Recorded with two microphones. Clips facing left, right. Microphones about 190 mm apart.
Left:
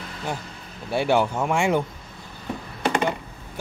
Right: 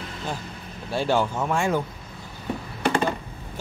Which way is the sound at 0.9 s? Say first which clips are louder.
Left 2 dB; 15° left (ahead or behind).